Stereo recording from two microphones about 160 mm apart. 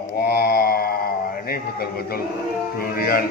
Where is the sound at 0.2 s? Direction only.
75° left (ahead or behind).